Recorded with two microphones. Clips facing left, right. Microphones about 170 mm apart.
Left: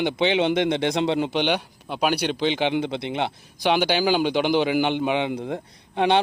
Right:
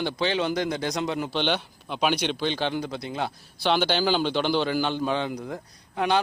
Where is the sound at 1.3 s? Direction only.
10° left (ahead or behind).